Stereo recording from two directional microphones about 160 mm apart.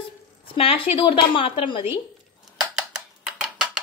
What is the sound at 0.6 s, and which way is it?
Speech, 35° left (ahead or behind).